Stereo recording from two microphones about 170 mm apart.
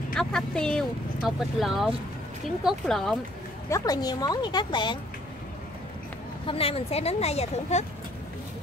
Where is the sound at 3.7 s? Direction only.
20° left (ahead or behind).